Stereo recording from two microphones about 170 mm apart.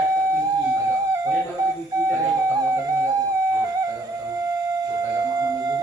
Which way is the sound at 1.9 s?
20° right (ahead or behind).